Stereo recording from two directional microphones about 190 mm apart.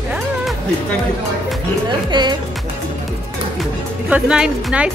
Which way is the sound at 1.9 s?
25° right (ahead or behind).